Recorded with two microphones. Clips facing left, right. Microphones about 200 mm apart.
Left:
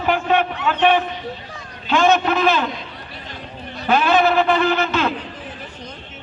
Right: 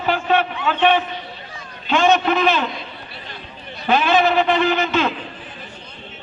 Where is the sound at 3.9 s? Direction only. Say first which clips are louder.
Even; 5° left (ahead or behind).